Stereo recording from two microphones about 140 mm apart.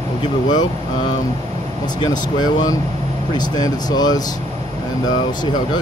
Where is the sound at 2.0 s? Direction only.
30° left (ahead or behind).